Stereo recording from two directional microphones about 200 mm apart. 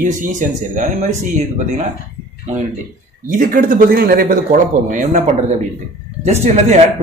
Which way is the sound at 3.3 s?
45° right (ahead or behind).